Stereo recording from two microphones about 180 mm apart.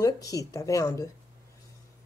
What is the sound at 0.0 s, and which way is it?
Speech, 20° left (ahead or behind).